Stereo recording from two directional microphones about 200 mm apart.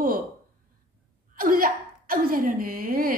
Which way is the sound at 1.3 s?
45° right (ahead or behind).